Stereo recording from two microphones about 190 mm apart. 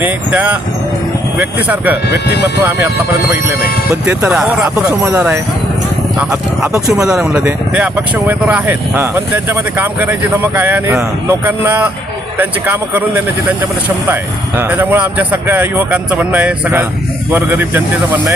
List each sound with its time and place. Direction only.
0.0 s speech: 10° right (ahead or behind)
2.0 s speech: 60° left (ahead or behind)
2.6 s speech: 10° right (ahead or behind)
4.0 s speech: 5° right (ahead or behind)